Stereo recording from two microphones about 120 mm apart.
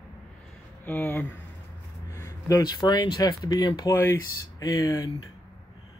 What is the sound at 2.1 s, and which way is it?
Speech, 25° left (ahead or behind).